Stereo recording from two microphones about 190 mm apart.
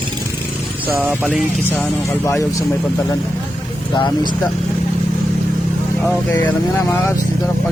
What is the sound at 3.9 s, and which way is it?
Speech, 25° left (ahead or behind).